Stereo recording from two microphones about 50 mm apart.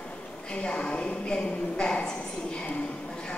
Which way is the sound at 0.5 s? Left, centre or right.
Left.